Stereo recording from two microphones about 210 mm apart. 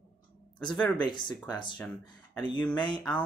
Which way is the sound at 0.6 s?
5° left (ahead or behind).